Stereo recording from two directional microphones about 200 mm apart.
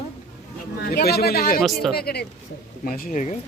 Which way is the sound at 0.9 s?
50° left (ahead or behind).